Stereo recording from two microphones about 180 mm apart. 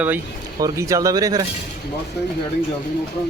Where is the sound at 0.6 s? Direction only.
20° right (ahead or behind).